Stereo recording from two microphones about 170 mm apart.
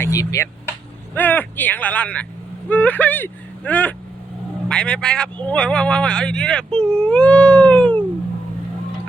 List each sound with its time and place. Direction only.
0.0 s speech: 20° left (ahead or behind)